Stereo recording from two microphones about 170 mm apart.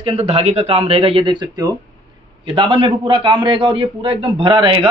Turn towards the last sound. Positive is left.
turn(degrees=-30)  # may be behind; listen again after turning